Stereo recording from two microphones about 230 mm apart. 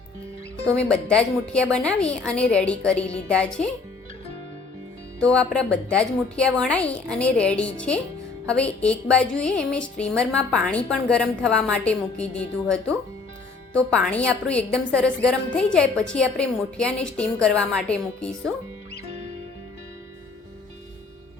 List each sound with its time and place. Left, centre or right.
0.9 s a woman's voice: centre
5.2 s a woman's voice: centre